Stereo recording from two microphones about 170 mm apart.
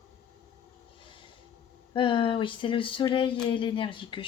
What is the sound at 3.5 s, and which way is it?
Speech, 30° left (ahead or behind).